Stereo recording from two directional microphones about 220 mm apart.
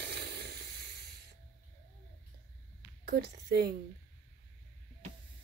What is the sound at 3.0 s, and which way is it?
Speech, 50° right (ahead or behind).